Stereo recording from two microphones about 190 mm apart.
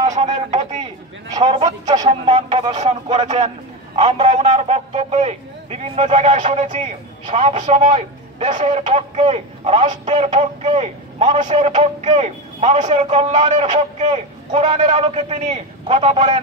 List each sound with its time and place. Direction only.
0.1 s a man's voice: 35° right (ahead or behind)
1.3 s a man's voice: 25° right (ahead or behind)
2.0 s a man's voice: 35° right (ahead or behind)